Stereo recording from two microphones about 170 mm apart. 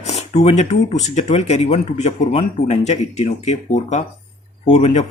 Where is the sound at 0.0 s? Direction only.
40° left (ahead or behind).